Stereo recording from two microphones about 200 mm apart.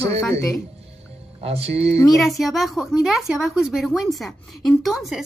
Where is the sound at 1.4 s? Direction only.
30° right (ahead or behind).